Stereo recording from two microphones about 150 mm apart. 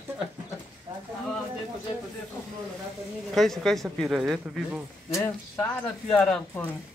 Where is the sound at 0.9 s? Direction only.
25° right (ahead or behind).